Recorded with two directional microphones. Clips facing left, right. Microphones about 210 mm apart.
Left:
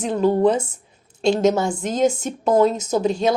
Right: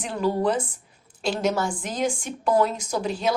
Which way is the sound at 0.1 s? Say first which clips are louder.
Left 6 dB; 25° left (ahead or behind).